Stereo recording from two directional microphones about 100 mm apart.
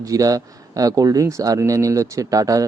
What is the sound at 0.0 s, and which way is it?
Speech, 35° right (ahead or behind).